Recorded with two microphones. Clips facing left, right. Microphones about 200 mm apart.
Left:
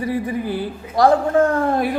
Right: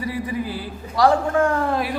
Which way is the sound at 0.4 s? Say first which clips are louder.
Left 6 dB; 55° left (ahead or behind).